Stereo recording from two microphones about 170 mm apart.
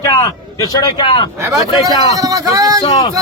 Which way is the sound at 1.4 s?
20° right (ahead or behind).